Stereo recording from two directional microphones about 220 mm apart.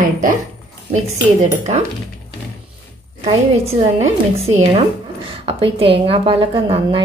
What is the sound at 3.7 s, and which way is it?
A woman's voice, 30° right (ahead or behind).